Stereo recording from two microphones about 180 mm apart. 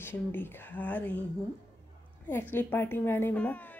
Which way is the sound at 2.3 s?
10° left (ahead or behind).